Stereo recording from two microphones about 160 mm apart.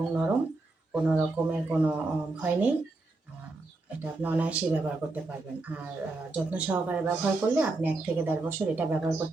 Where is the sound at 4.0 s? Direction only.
10° right (ahead or behind).